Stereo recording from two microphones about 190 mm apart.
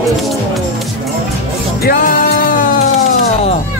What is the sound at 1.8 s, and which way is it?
Music, 50° left (ahead or behind).